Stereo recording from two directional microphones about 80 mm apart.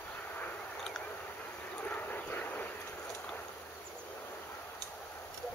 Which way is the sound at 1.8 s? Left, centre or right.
Centre.